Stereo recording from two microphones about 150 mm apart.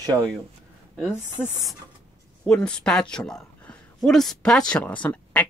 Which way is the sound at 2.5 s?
5° left (ahead or behind).